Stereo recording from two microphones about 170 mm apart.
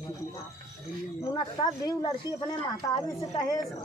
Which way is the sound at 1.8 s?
25° left (ahead or behind).